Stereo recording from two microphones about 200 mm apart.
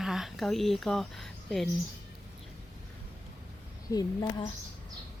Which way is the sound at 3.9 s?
20° left (ahead or behind).